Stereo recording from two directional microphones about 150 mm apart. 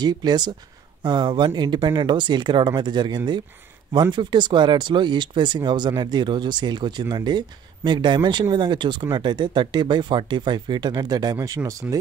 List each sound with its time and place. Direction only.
0.0 s speech: 25° right (ahead or behind)